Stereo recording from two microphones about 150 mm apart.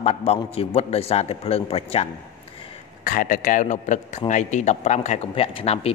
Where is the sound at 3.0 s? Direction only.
65° left (ahead or behind).